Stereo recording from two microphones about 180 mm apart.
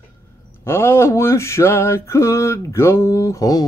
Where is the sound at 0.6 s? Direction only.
15° left (ahead or behind).